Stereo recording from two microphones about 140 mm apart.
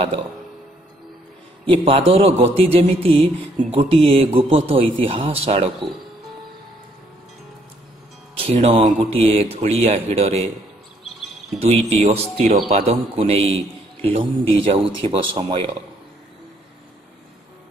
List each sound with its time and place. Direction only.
1.7 s a man's voice: 40° right (ahead or behind)
8.4 s a man's voice: 45° right (ahead or behind)
11.6 s a man's voice: 45° right (ahead or behind)